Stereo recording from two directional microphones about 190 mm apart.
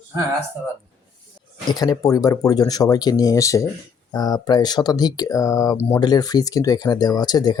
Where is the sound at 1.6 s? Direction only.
20° left (ahead or behind).